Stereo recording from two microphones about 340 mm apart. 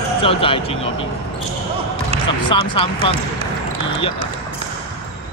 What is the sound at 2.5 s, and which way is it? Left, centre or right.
Speech, centre.